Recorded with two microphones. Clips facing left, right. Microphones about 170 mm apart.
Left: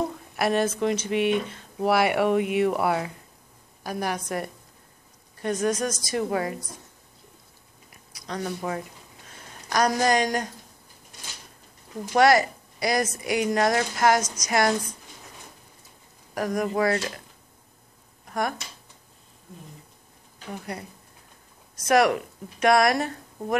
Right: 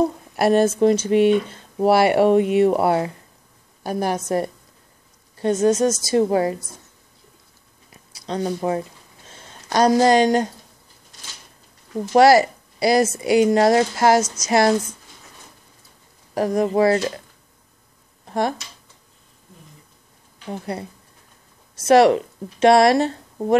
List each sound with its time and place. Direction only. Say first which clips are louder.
0.4 s a woman's voice: right 8 dB; 35° right (ahead or behind)
7.9 s a sound: right 7 dB; 30° right (ahead or behind)
12.1 s a woman's voice: right 6 dB; 30° right (ahead or behind)
16.3 s a woman's voice: right 7 dB; 25° right (ahead or behind)
18.2 s a sound: right 6 dB; 25° right (ahead or behind)
20.7 s a woman's voice: right 6 dB; 30° right (ahead or behind)